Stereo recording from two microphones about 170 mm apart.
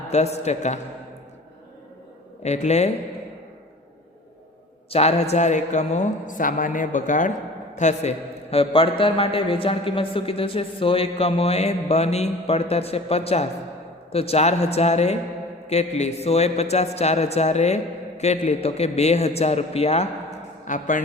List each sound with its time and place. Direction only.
0.1 s a man's voice: 40° left (ahead or behind)
2.4 s a man's voice: 40° left (ahead or behind)
4.9 s a woman's voice: 40° left (ahead or behind)